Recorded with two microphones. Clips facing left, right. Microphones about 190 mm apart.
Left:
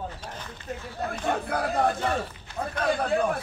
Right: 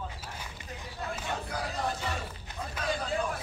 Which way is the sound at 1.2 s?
55° left (ahead or behind).